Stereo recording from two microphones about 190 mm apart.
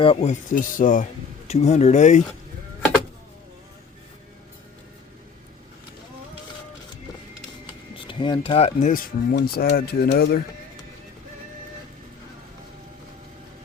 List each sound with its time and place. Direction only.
0.0 s speech: 30° left (ahead or behind)
7.9 s speech: 25° left (ahead or behind); by 10.4 s 55° left (ahead or behind)